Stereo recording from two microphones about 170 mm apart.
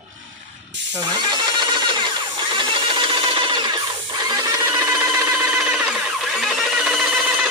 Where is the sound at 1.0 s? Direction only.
25° right (ahead or behind).